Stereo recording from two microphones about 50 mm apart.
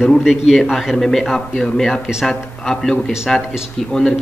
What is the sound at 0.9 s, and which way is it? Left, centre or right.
A man's voice, centre.